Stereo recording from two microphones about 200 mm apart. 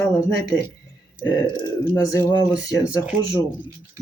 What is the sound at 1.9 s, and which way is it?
Speech, 15° left (ahead or behind).